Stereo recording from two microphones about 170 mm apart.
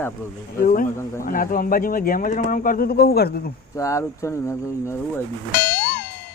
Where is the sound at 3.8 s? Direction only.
20° left (ahead or behind).